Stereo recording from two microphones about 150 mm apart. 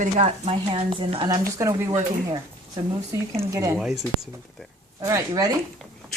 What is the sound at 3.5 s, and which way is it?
Speech, 20° right (ahead or behind).